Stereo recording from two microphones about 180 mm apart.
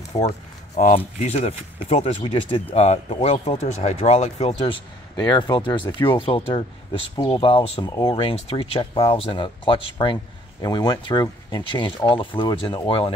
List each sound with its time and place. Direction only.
0.1 s speech: 25° left (ahead or behind)